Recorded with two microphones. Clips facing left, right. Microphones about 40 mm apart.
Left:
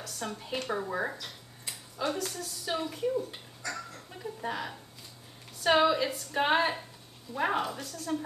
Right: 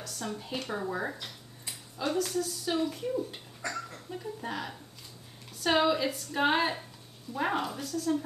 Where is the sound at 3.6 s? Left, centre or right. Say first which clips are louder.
Right 2 dB; right.